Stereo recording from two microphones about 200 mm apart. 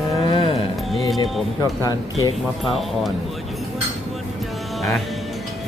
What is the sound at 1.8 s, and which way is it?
Speech, 15° left (ahead or behind).